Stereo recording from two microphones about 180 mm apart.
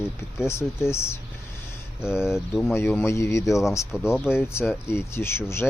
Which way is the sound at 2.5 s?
Centre (ahead or behind).